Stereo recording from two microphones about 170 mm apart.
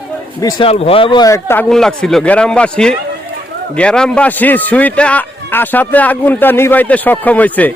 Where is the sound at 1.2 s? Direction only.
15° left (ahead or behind).